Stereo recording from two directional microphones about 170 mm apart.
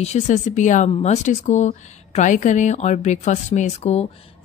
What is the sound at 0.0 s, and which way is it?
Speech, 45° left (ahead or behind).